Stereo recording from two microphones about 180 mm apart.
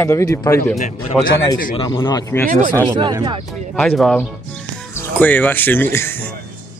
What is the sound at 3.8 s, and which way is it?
Speech, 5° left (ahead or behind).